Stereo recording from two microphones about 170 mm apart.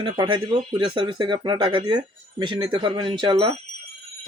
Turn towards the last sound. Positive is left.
turn(degrees=-30)  # may be behind; listen again after turning